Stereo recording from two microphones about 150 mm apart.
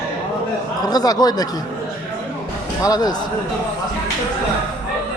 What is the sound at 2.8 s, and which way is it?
Speech, 25° left (ahead or behind).